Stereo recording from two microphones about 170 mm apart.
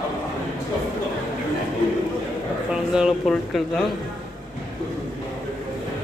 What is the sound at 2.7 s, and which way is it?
Speech, 5° right (ahead or behind).